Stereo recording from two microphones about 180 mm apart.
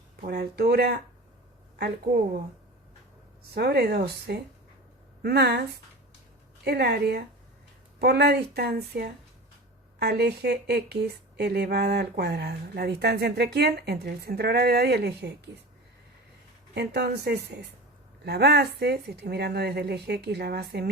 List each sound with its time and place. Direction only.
0.3 s speech: 60° right (ahead or behind)
3.5 s speech: 65° right (ahead or behind)
6.7 s speech: 65° right (ahead or behind)
16.7 s speech: 65° right (ahead or behind)